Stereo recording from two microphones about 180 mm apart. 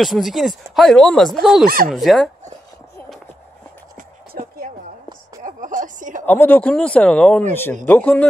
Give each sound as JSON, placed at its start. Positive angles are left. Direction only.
{"t": 0.0, "sound": "speech", "side_deg": 0}
{"t": 3.9, "sound": "a sound", "side_deg": -55}
{"t": 6.2, "sound": "speech", "side_deg": 10}